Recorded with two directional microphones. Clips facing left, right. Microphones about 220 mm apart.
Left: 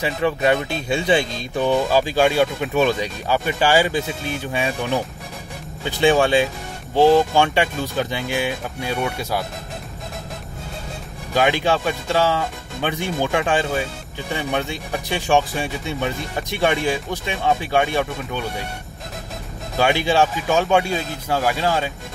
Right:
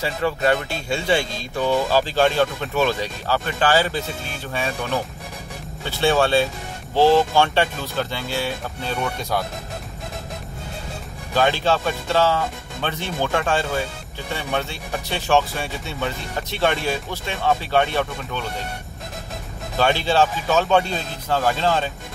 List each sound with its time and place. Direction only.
0.0 s speech: 15° left (ahead or behind)
11.3 s speech: 15° left (ahead or behind)
19.8 s speech: 15° left (ahead or behind)